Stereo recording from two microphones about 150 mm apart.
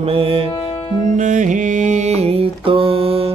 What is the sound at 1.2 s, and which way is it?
Mantra, 55° right (ahead or behind).